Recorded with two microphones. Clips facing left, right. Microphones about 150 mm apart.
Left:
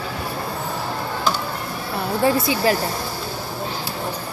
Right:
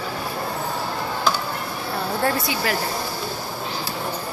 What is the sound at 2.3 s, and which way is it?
Speech, 30° left (ahead or behind).